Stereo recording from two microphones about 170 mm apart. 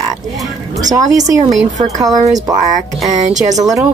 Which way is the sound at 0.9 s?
20° right (ahead or behind).